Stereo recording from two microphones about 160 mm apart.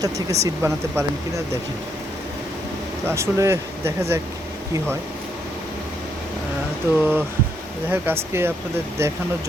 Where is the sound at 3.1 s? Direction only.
15° right (ahead or behind).